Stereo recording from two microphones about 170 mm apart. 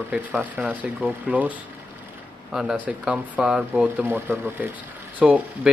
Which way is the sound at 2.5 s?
5° right (ahead or behind).